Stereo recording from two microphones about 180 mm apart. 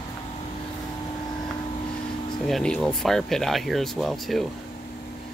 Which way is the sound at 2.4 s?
5° left (ahead or behind).